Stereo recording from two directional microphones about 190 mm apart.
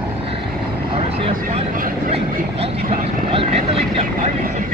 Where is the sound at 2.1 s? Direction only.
30° right (ahead or behind).